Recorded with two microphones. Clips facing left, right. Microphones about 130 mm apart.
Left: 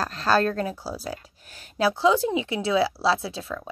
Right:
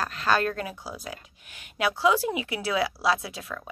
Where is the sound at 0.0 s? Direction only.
35° left (ahead or behind).